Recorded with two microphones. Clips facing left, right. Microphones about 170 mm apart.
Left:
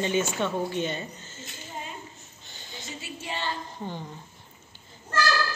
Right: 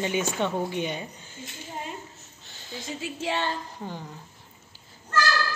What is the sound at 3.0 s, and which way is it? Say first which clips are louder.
Female singing: right 8 dB; 90° right.